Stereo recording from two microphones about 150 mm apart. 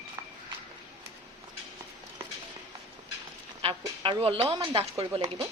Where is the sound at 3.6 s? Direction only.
35° right (ahead or behind).